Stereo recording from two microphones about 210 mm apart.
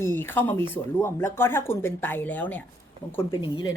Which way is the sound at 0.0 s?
10° left (ahead or behind).